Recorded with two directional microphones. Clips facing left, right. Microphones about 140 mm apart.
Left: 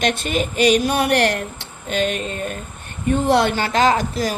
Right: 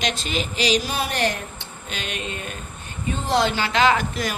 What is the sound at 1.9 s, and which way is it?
Female singing, 45° left (ahead or behind).